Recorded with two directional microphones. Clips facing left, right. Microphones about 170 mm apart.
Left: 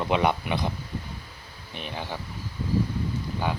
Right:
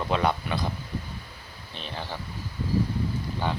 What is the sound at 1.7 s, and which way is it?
Speech, 15° left (ahead or behind).